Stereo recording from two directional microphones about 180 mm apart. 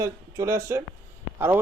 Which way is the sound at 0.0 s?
15° right (ahead or behind).